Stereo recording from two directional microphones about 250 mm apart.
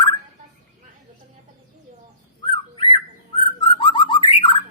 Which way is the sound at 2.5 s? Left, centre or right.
Centre.